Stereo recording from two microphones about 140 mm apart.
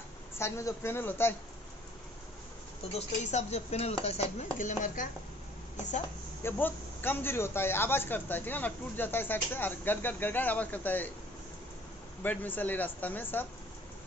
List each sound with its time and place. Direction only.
0.4 s a man's voice: 20° left (ahead or behind)
2.9 s speech: 50° left (ahead or behind)
4.6 s chopping: 70° left (ahead or behind)
6.4 s a man's voice: 15° left (ahead or behind)
12.2 s a man's voice: 15° left (ahead or behind)